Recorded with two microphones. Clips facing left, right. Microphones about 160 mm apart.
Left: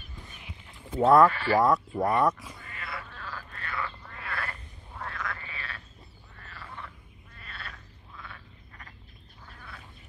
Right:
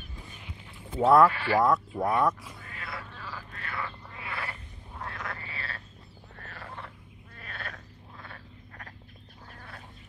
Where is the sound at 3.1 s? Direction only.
10° right (ahead or behind).